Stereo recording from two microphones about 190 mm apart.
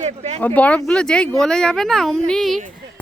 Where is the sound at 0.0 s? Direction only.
40° right (ahead or behind).